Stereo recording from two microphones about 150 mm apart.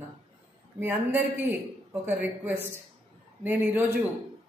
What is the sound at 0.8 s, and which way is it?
Speech, 15° right (ahead or behind).